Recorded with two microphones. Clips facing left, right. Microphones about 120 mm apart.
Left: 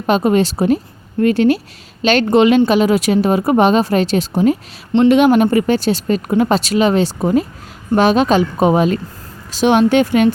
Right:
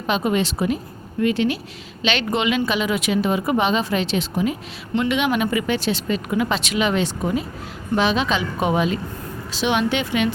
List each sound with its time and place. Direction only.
0.1 s speech: 40° left (ahead or behind)
7.9 s speech: 45° left (ahead or behind)